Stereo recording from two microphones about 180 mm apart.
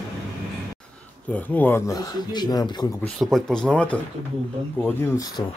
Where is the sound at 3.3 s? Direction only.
5° left (ahead or behind).